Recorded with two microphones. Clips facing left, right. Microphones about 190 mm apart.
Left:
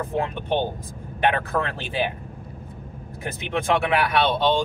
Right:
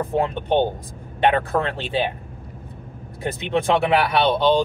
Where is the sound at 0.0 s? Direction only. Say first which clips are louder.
Right 4 dB; 35° right (ahead or behind).